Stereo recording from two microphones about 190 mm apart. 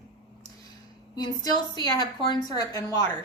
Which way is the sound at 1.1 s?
20° left (ahead or behind).